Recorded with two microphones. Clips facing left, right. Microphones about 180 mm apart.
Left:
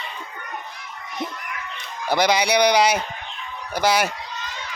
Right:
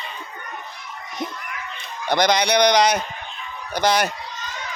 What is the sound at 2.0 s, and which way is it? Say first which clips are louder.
Speech: right 1 dB; 5° left (ahead or behind).